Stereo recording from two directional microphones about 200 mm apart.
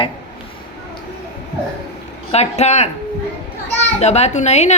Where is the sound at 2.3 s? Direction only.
35° left (ahead or behind).